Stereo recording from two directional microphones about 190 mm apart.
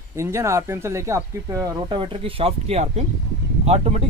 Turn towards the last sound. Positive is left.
turn(degrees=-30)  # may be behind; listen again after turning